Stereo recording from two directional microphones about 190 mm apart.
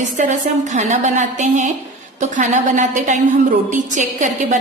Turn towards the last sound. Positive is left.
turn(degrees=-40)  # may be behind; listen again after turning